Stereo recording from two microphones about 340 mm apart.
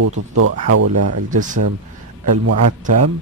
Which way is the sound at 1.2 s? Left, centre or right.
Right.